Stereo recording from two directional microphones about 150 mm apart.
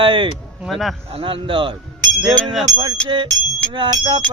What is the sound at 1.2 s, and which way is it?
Music, 35° right (ahead or behind).